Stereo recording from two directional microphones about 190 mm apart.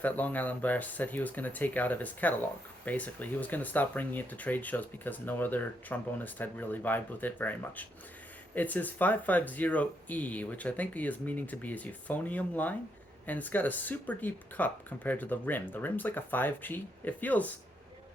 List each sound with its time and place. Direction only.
0.0 s speech: 10° left (ahead or behind)